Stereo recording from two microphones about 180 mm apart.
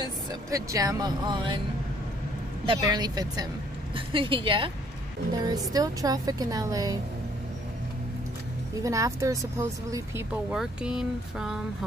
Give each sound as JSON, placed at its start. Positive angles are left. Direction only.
{"t": 0.0, "sound": "speech", "side_deg": -20}
{"t": 2.6, "sound": "speech", "side_deg": -25}
{"t": 8.8, "sound": "a woman's voice", "side_deg": -15}
{"t": 10.5, "sound": "speech", "side_deg": -5}